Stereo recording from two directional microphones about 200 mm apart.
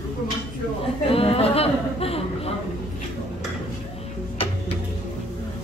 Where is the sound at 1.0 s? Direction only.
30° left (ahead or behind).